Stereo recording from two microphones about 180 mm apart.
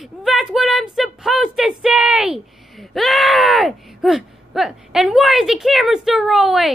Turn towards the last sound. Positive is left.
turn(degrees=0)  # may be behind; listen again after turning